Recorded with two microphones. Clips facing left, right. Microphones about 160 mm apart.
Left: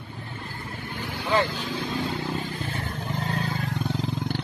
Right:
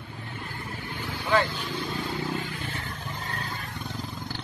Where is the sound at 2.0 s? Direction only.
30° left (ahead or behind).